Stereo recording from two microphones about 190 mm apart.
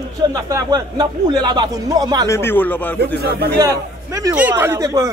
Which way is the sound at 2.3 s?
10° left (ahead or behind).